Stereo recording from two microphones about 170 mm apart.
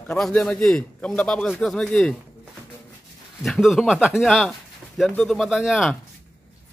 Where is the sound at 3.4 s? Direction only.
Centre (ahead or behind).